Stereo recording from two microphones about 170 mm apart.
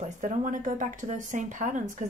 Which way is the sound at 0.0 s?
45° right (ahead or behind).